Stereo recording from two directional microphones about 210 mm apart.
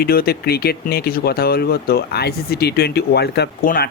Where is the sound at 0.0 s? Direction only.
45° left (ahead or behind).